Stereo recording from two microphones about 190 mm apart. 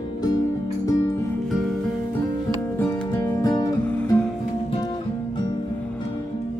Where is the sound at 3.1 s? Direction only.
15° left (ahead or behind).